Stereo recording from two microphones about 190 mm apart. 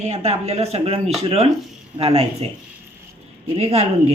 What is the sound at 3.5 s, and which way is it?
Speech, 35° right (ahead or behind).